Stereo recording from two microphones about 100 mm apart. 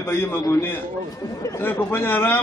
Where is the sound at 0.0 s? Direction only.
20° left (ahead or behind).